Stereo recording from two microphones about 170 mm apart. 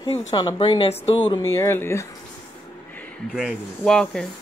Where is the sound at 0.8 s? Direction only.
35° left (ahead or behind).